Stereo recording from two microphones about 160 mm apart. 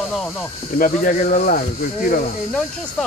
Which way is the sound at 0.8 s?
55° left (ahead or behind).